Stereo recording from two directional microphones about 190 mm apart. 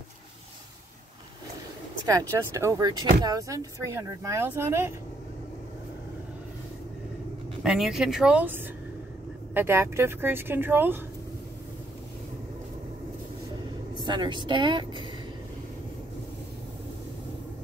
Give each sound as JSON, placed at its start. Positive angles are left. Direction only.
{"t": 2.0, "sound": "speech", "side_deg": -20}
{"t": 7.6, "sound": "speech", "side_deg": 0}
{"t": 13.9, "sound": "speech", "side_deg": -25}